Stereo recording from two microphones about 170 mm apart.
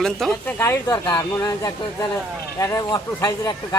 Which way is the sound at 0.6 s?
15° left (ahead or behind).